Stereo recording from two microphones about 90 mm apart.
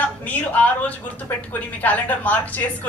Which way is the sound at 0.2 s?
15° left (ahead or behind).